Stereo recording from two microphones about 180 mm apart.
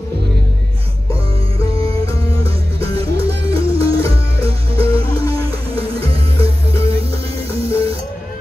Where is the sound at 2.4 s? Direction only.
30° right (ahead or behind).